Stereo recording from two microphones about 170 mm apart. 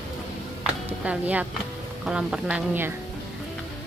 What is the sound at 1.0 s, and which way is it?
A woman's voice, 10° right (ahead or behind).